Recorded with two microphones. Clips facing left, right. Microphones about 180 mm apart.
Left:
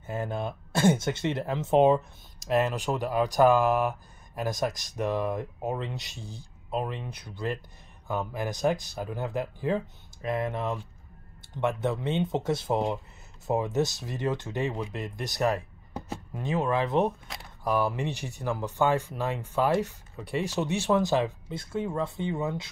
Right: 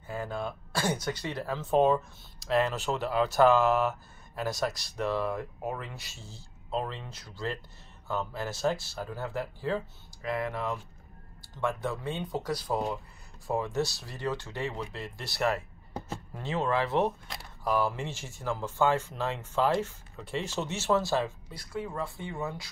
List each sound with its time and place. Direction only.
0.0 s speech: 20° left (ahead or behind)